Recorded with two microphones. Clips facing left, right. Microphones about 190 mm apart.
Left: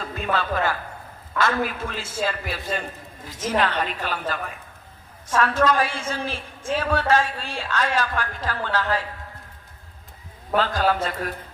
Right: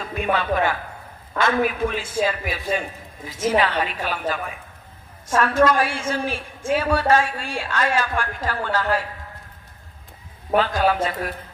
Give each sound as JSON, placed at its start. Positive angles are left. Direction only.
{"t": 0.1, "sound": "a man's voice", "side_deg": -15}
{"t": 10.5, "sound": "a man's voice", "side_deg": -10}